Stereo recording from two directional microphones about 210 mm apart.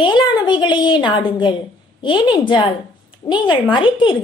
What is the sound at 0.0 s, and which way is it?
A woman's voice, 20° left (ahead or behind).